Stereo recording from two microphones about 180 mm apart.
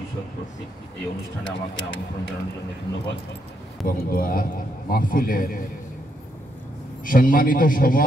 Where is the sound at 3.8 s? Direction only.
55° left (ahead or behind).